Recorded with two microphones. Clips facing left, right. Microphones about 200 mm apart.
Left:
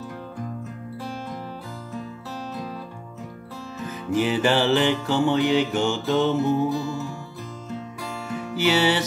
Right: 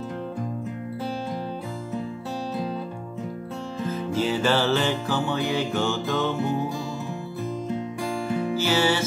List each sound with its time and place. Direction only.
4.1 s music: 15° left (ahead or behind)
8.6 s music: 15° left (ahead or behind)